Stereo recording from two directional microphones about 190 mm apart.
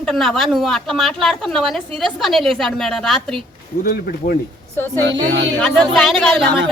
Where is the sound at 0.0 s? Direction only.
Centre (ahead or behind).